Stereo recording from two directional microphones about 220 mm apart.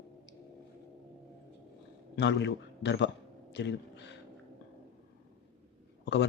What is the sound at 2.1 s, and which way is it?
A man's voice, 50° left (ahead or behind).